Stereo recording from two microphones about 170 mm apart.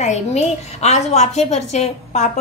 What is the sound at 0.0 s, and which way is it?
A woman's voice, 40° left (ahead or behind).